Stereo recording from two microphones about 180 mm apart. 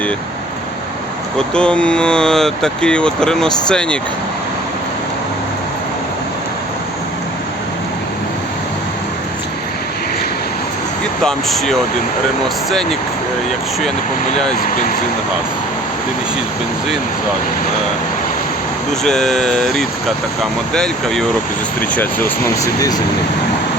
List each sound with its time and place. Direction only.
1.4 s speech: 5° left (ahead or behind)
11.2 s speech: centre (ahead or behind)
19.0 s speech: 5° left (ahead or behind)
22.6 s speech: 20° left (ahead or behind)